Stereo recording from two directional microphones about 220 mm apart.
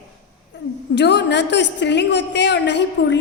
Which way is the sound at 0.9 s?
50° left (ahead or behind).